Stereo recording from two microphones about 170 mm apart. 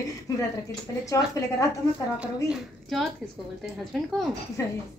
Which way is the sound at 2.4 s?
Centre (ahead or behind).